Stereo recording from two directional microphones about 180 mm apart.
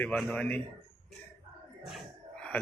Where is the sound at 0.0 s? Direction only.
10° left (ahead or behind).